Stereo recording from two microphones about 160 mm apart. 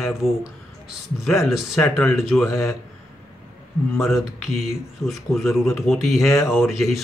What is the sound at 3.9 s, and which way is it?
Speech, 15° left (ahead or behind).